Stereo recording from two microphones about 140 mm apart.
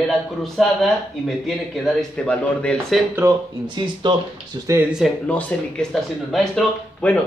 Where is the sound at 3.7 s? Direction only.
35° right (ahead or behind).